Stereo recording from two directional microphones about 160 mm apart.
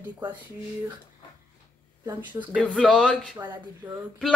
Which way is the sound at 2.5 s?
5° left (ahead or behind).